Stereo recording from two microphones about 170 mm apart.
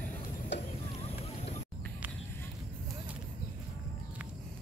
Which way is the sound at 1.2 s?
40° left (ahead or behind).